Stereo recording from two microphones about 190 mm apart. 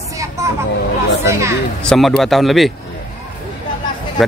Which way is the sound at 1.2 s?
15° right (ahead or behind).